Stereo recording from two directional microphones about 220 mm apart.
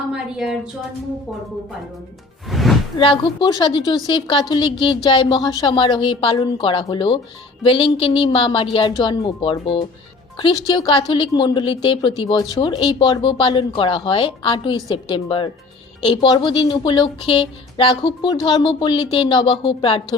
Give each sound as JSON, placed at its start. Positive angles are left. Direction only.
{"t": 0.1, "sound": "a woman's voice", "side_deg": 0}
{"t": 2.5, "sound": "music", "side_deg": 0}
{"t": 3.0, "sound": "a woman's voice", "side_deg": 20}